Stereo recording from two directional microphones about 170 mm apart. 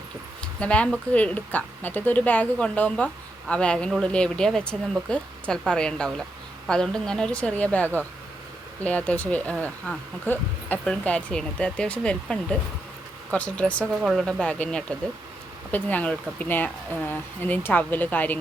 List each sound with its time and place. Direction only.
0.4 s a woman's voice: 5° left (ahead or behind)